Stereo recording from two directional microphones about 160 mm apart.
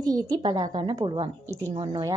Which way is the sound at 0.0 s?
25° right (ahead or behind).